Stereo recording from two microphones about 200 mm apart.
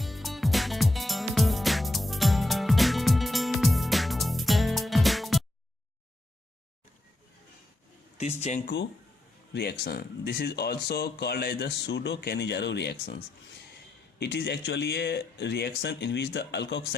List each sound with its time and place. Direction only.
0.0 s music: centre (ahead or behind)
8.2 s speech: 35° left (ahead or behind)
9.5 s speech: 55° left (ahead or behind)
14.2 s speech: 55° left (ahead or behind)